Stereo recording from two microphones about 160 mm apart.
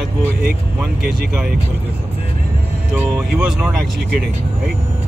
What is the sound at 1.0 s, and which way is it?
Speech, 75° right (ahead or behind).